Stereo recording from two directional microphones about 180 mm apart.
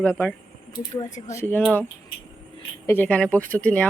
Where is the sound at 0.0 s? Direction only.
10° left (ahead or behind).